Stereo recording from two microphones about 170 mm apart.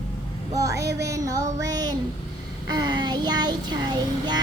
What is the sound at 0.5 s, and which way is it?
Child singing, 20° right (ahead or behind).